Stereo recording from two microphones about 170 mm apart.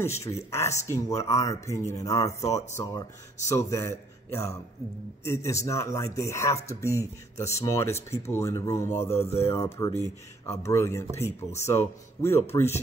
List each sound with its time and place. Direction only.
0.0 s speech: 15° left (ahead or behind)